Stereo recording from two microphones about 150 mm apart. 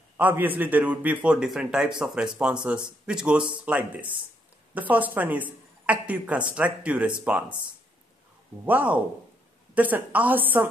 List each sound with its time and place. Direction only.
0.2 s a man's voice: 10° right (ahead or behind)
8.6 s a man's voice: 10° right (ahead or behind)